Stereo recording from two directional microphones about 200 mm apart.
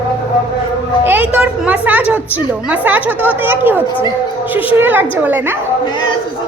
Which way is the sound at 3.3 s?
10° right (ahead or behind).